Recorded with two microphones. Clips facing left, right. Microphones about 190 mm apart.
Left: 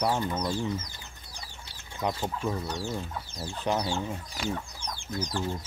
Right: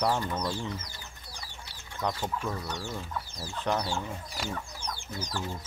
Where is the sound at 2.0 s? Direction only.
10° left (ahead or behind).